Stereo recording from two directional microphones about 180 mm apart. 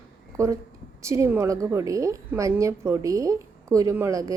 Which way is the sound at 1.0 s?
15° right (ahead or behind).